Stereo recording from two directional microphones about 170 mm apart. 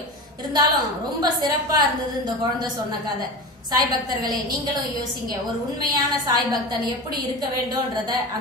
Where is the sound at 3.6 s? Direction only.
25° right (ahead or behind).